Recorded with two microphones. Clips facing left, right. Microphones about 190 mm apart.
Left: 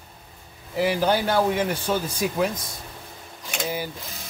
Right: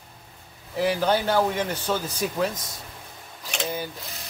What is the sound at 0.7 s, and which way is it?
Speech, 10° left (ahead or behind).